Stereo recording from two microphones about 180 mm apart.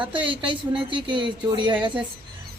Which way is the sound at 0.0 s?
30° right (ahead or behind).